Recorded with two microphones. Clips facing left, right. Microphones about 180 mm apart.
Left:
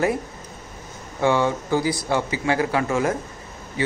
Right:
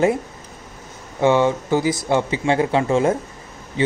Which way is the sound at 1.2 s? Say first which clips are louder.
Right 4 dB; 20° right (ahead or behind).